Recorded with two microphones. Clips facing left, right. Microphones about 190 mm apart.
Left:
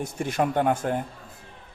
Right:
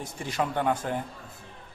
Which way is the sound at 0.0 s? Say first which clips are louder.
Left 5 dB; 55° left (ahead or behind).